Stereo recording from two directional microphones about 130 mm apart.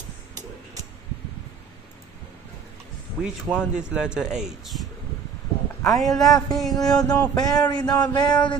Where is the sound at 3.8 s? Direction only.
5° right (ahead or behind).